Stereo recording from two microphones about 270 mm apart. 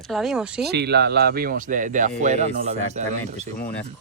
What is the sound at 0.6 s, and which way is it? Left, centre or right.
Speech, right.